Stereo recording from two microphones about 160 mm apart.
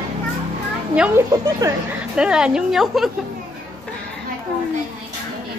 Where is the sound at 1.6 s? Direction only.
20° right (ahead or behind).